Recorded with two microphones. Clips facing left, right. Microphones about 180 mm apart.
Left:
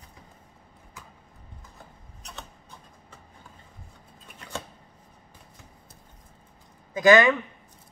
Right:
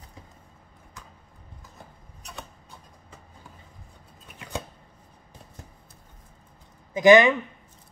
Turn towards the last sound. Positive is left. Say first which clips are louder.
# right 2 dB
turn(degrees=-20)  # may be behind; listen again after turning